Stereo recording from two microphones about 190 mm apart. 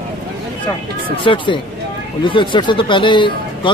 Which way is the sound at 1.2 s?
25° left (ahead or behind).